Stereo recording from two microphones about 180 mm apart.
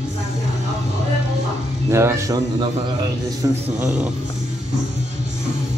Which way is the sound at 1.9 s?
15° right (ahead or behind).